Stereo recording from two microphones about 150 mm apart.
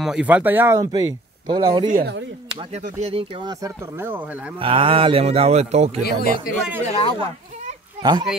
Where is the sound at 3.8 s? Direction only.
15° right (ahead or behind).